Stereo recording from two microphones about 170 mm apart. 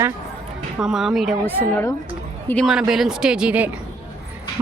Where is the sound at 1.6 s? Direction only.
15° left (ahead or behind).